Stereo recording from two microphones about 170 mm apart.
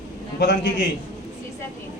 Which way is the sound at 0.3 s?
75° left (ahead or behind).